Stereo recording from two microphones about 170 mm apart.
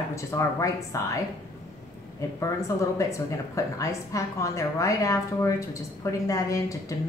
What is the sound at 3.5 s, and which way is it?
A woman's voice, 20° left (ahead or behind).